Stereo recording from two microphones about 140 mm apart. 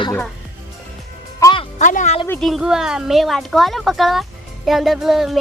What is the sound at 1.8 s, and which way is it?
Speech, 65° left (ahead or behind).